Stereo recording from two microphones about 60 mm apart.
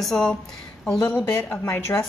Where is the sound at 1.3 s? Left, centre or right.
Left.